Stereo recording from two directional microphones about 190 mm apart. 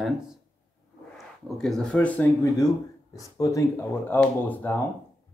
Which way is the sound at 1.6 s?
5° left (ahead or behind).